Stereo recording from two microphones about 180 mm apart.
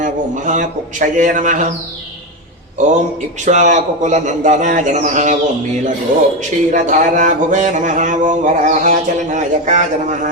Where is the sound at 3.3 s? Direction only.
40° right (ahead or behind).